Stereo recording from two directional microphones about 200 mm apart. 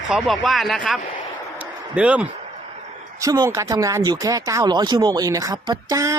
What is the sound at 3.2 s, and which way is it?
Speech, 20° right (ahead or behind).